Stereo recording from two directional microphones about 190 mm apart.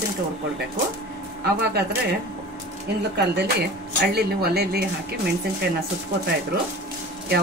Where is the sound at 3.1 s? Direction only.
60° right (ahead or behind).